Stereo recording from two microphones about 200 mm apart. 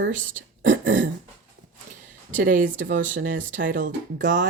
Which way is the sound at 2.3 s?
40° right (ahead or behind).